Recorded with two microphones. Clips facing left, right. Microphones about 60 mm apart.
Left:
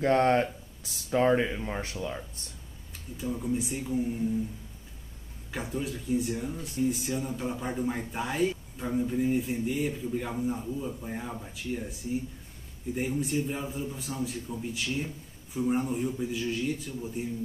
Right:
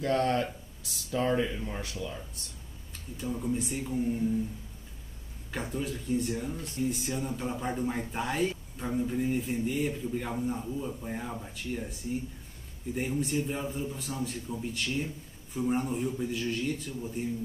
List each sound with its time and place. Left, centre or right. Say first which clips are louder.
0.0 s speech: left 4 dB; left
2.9 s speech: left 1 dB; centre
5.5 s speech: left 1 dB; centre